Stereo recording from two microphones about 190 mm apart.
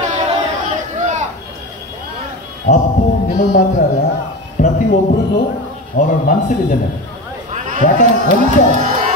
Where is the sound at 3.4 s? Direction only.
45° left (ahead or behind).